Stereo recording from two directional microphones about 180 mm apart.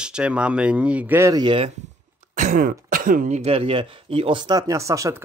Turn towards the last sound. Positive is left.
turn(degrees=-15)  # may be behind; listen again after turning